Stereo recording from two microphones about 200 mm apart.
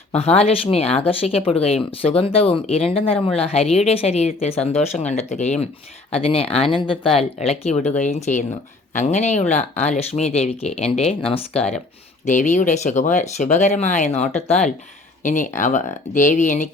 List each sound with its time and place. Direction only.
0.2 s a woman's voice: 30° left (ahead or behind)